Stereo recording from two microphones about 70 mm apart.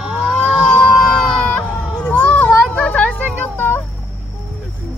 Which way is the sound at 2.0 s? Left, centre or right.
Left.